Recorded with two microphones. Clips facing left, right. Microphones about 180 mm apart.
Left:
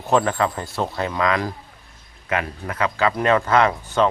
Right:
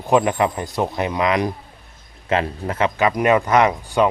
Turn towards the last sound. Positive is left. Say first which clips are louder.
# right 2 dB
turn(degrees=-15)  # may be behind; listen again after turning